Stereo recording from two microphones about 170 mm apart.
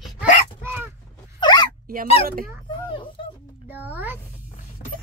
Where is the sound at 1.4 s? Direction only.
25° left (ahead or behind).